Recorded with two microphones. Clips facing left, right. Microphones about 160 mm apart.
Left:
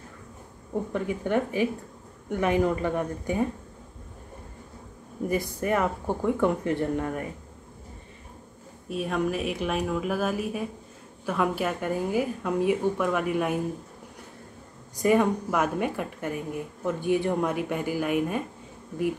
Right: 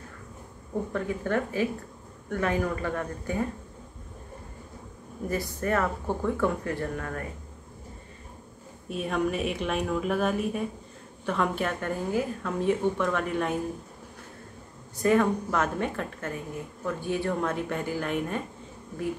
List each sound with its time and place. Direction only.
0.9 s a woman's voice: 15° left (ahead or behind)
5.3 s a woman's voice: 15° left (ahead or behind)
8.8 s a woman's voice: centre (ahead or behind)
15.0 s a woman's voice: 15° left (ahead or behind)